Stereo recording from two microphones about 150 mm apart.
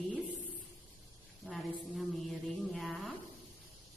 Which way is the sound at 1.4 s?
Centre (ahead or behind).